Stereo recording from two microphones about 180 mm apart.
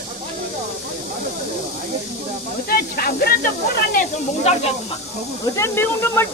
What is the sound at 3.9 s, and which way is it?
Speech, 40° left (ahead or behind).